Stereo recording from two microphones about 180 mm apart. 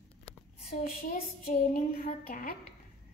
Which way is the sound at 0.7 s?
55° left (ahead or behind).